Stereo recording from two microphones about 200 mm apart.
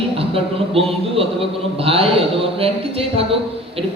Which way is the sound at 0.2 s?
30° right (ahead or behind).